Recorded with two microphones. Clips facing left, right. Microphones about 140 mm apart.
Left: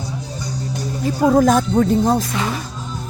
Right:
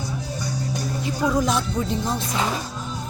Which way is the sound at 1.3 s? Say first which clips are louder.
Left 10 dB; 50° left (ahead or behind).